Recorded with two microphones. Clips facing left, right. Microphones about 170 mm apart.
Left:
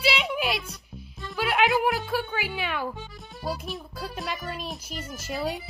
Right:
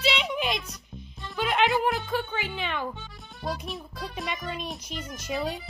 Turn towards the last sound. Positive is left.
turn(degrees=5)  # may be behind; listen again after turning